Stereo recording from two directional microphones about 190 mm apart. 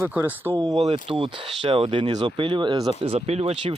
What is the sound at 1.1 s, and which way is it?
Speech, 30° right (ahead or behind).